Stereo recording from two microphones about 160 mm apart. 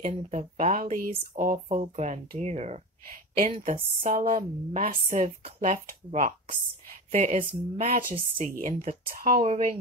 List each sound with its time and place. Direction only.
0.0 s speech: 45° right (ahead or behind)
4.0 s a woman's voice: 60° right (ahead or behind)